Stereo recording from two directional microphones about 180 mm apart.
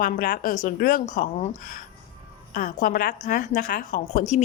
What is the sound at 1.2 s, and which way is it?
A woman's voice, 40° left (ahead or behind).